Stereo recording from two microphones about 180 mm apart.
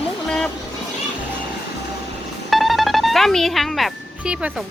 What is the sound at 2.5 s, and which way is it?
Speech, centre (ahead or behind).